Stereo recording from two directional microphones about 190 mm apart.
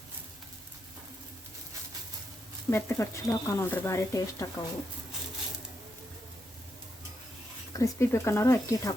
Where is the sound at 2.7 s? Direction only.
15° left (ahead or behind).